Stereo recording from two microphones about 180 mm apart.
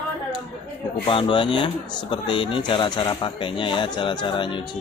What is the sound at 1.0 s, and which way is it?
Speech, 30° left (ahead or behind).